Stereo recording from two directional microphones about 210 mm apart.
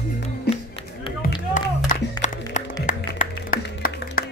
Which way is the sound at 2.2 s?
35° left (ahead or behind).